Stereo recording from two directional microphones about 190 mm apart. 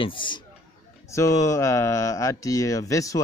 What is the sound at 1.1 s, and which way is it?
A man's voice, 15° left (ahead or behind).